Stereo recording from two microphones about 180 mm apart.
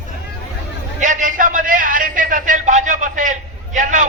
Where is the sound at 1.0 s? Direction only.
45° right (ahead or behind).